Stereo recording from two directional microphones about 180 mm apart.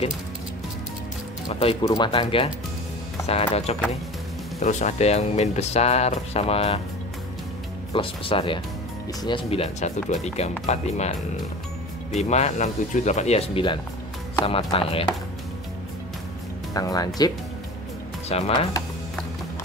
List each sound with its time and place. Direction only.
1.5 s speech: 30° left (ahead or behind)
7.9 s speech: 30° left (ahead or behind)
12.2 s speech: 40° left (ahead or behind)
16.7 s speech: 20° left (ahead or behind)
18.3 s speech: 35° left (ahead or behind)